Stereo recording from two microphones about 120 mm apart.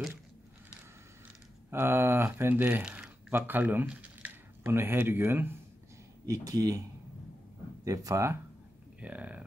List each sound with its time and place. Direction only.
1.7 s speech: 20° right (ahead or behind)
7.8 s speech: 30° right (ahead or behind)
9.0 s speech: 10° right (ahead or behind)